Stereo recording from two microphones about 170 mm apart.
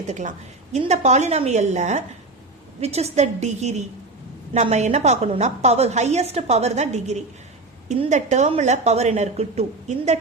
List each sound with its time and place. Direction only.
0.1 s a woman's voice: 45° right (ahead or behind)